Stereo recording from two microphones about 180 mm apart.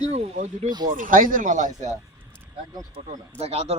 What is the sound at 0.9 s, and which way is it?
Speech, 50° right (ahead or behind).